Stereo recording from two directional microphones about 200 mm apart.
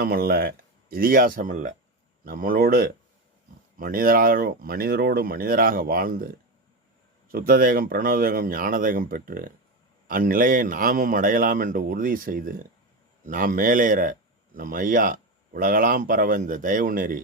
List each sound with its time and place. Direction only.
0.0 s speech: 50° right (ahead or behind)